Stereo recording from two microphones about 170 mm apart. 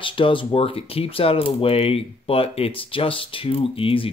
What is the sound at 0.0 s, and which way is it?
Speech, 30° left (ahead or behind).